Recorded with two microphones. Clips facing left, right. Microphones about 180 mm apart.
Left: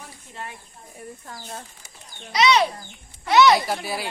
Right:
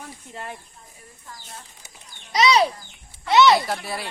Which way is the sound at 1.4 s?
55° left (ahead or behind).